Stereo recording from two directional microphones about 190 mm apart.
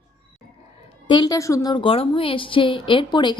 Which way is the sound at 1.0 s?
25° left (ahead or behind).